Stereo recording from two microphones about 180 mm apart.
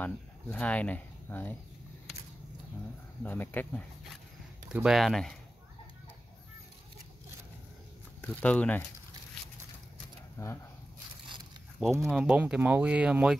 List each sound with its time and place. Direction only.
0.0 s speech: 10° left (ahead or behind)
3.3 s speech: 10° left (ahead or behind)
4.6 s speech: 5° right (ahead or behind)
8.2 s speech: 5° left (ahead or behind)
10.3 s speech: 15° left (ahead or behind)
12.0 s speech: 5° right (ahead or behind)